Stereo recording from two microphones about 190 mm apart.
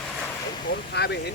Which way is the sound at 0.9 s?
60° left (ahead or behind).